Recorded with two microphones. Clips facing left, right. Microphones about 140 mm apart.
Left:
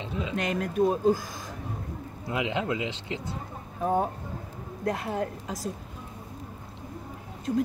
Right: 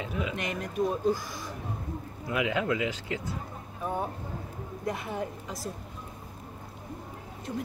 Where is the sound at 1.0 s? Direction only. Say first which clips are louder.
Left 4 dB; 45° left (ahead or behind).